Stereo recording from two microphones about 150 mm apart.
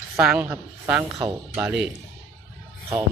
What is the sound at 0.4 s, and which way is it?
Speech, 10° right (ahead or behind).